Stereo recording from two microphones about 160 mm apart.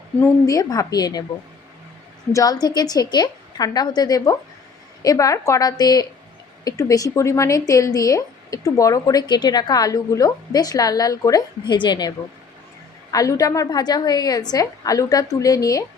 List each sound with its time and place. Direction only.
0.2 s speech: 20° left (ahead or behind)
2.3 s speech: 25° left (ahead or behind)